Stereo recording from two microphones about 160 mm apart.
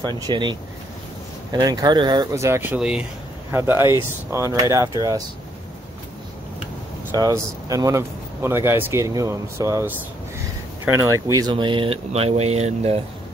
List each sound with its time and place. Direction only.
0.0 s speech: 25° right (ahead or behind)
7.2 s speech: 20° right (ahead or behind); by 13.0 s 40° right (ahead or behind)